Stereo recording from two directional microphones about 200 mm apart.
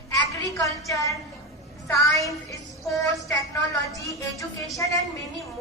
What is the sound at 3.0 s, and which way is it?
A woman's voice, 15° left (ahead or behind).